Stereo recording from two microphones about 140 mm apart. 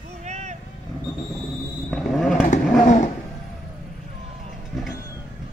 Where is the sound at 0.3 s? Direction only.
55° right (ahead or behind).